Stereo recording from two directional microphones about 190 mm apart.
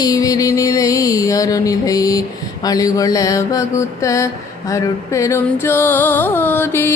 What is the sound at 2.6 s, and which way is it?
Music, 20° left (ahead or behind).